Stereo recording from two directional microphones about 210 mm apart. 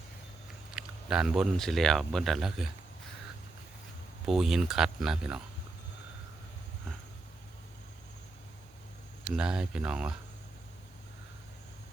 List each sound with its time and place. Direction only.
0.8 s speech: 5° right (ahead or behind)
4.3 s speech: centre (ahead or behind)
9.2 s speech: 5° right (ahead or behind)